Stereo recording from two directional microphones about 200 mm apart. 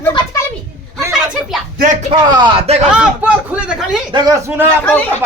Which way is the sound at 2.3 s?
25° right (ahead or behind).